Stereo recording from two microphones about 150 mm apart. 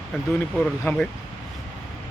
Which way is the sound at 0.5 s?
5° left (ahead or behind).